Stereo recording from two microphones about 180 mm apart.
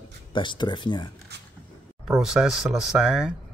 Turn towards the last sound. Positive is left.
turn(degrees=-5)  # may be behind; listen again after turning